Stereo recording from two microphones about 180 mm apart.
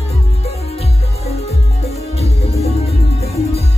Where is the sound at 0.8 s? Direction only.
35° left (ahead or behind).